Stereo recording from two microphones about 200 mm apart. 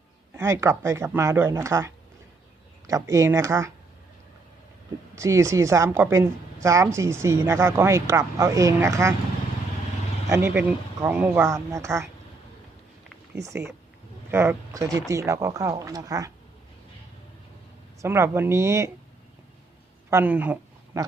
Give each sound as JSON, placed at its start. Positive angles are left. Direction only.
{"t": 0.3, "sound": "a woman's voice", "side_deg": -15}
{"t": 5.1, "sound": "a woman's voice", "side_deg": -15}
{"t": 10.2, "sound": "a woman's voice", "side_deg": -15}
{"t": 13.4, "sound": "a woman's voice", "side_deg": -15}
{"t": 18.0, "sound": "a woman's voice", "side_deg": -15}
{"t": 20.1, "sound": "a sound", "side_deg": -10}